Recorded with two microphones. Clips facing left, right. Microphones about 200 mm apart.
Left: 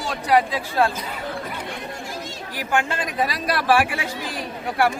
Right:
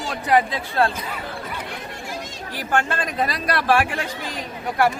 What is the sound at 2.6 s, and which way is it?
A man's voice, 10° left (ahead or behind).